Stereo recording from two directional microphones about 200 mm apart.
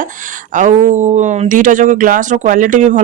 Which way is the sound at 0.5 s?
40° right (ahead or behind).